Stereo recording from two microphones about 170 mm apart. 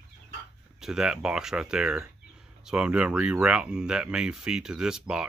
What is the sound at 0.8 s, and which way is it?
Speech, 5° right (ahead or behind).